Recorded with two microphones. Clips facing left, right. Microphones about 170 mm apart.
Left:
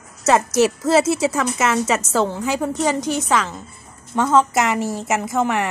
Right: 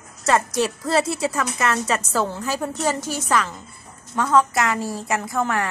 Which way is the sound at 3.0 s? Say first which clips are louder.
Left 3 dB; 20° left (ahead or behind).